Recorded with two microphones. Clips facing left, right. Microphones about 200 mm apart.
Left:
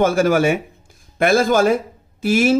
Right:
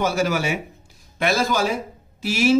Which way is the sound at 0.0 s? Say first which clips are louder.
Left 7 dB; 50° left (ahead or behind).